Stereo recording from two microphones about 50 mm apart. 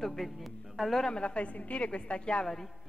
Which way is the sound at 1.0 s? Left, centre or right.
Centre.